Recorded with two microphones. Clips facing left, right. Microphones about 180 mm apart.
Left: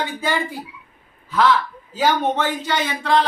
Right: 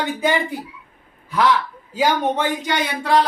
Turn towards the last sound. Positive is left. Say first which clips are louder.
# right 1 dB
turn(degrees=-10)  # may be behind; listen again after turning